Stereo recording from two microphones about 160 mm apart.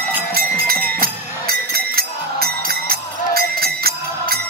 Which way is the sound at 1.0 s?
65° right (ahead or behind).